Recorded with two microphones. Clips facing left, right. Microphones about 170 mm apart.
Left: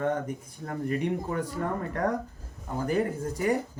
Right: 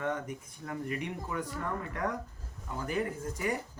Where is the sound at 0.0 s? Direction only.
35° left (ahead or behind).